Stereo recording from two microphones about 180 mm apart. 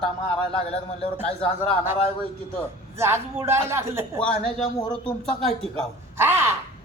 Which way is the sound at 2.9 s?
15° right (ahead or behind).